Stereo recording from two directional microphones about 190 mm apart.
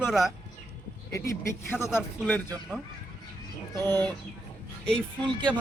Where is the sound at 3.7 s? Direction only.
20° right (ahead or behind).